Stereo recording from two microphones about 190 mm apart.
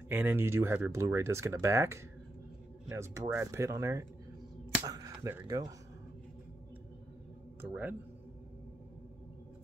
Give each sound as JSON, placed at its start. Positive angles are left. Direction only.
{"t": 0.1, "sound": "speech", "side_deg": -10}
{"t": 7.6, "sound": "speech", "side_deg": -10}